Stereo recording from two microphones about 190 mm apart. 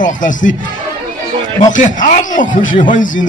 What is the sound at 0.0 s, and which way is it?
Speech, 45° left (ahead or behind).